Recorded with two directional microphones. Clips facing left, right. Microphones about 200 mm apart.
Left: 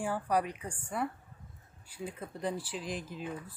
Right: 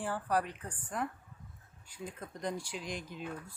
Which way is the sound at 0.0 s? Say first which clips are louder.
Left 2 dB; 10° left (ahead or behind).